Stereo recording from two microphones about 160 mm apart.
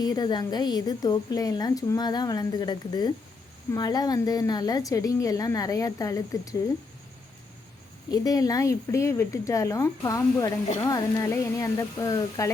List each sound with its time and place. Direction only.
0.0 s a woman's voice: 25° left (ahead or behind)
8.1 s a woman's voice: 20° left (ahead or behind)